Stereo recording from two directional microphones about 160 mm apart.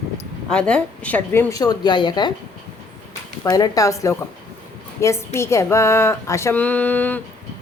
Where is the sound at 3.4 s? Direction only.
25° left (ahead or behind).